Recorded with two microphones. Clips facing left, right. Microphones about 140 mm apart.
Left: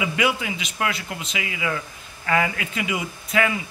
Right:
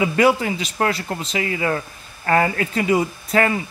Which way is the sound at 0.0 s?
40° right (ahead or behind).